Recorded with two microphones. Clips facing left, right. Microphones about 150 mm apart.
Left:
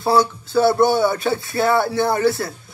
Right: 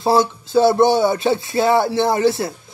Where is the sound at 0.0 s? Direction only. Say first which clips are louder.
Right 1 dB; 20° right (ahead or behind).